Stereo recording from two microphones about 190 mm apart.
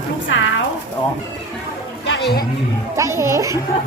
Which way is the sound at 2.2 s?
60° left (ahead or behind).